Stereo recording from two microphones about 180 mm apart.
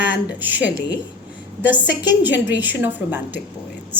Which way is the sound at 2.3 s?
80° left.